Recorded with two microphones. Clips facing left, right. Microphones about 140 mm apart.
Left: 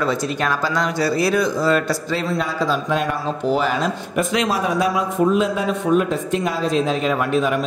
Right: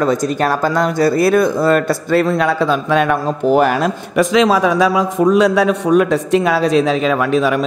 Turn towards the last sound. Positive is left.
turn(degrees=-90)